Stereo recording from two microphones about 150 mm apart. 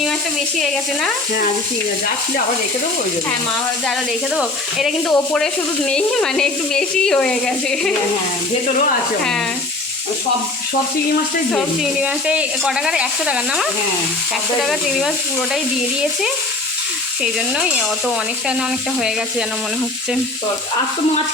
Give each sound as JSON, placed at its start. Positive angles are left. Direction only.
{"t": 4.4, "sound": "speech", "side_deg": 0}
{"t": 11.5, "sound": "speech", "side_deg": -5}
{"t": 17.6, "sound": "speech", "side_deg": -5}